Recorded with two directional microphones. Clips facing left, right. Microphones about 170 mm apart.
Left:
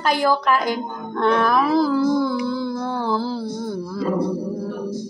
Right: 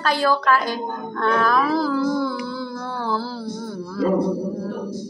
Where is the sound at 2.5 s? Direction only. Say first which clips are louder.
Left 5 dB; 15° left (ahead or behind).